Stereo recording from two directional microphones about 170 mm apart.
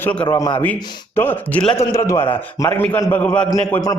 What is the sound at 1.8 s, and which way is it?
A man's voice, 20° left (ahead or behind).